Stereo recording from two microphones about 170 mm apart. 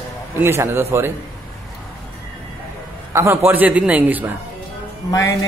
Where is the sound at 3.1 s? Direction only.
15° right (ahead or behind).